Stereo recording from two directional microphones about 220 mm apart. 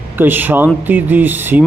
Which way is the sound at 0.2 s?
10° right (ahead or behind).